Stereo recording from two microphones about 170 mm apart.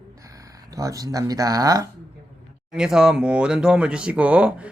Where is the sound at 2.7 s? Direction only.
5° right (ahead or behind).